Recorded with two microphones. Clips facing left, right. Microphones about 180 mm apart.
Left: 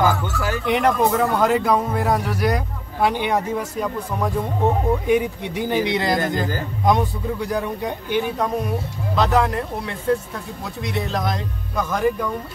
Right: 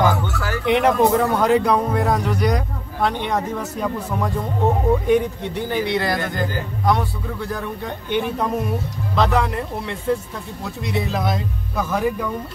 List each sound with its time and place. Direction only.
0.0 s music: 15° left (ahead or behind)
0.7 s a man's voice: centre (ahead or behind)
8.2 s speech: centre (ahead or behind)